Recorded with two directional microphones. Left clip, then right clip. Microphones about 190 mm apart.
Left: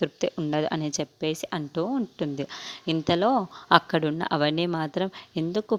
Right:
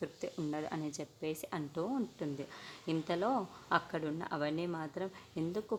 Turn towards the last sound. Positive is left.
turn(degrees=40)  # may be behind; listen again after turning